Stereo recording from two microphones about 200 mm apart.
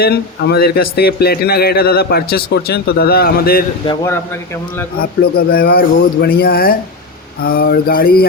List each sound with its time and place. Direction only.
0.0 s speech: 55° left (ahead or behind)
3.8 s speech: 15° left (ahead or behind)
4.9 s speech: 50° left (ahead or behind)